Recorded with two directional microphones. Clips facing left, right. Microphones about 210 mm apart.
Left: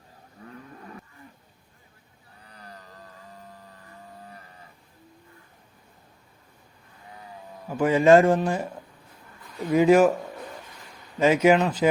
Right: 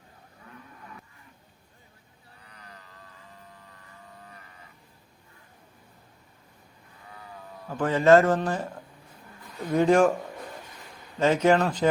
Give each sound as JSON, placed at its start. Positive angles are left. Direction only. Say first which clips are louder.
{"t": 2.4, "sound": "printer", "louder": "left 5 dB", "side_deg": 35}
{"t": 7.7, "sound": "a man's voice", "louder": "left 2 dB", "side_deg": 10}
{"t": 11.2, "sound": "a man's voice", "louder": "left 2 dB", "side_deg": 10}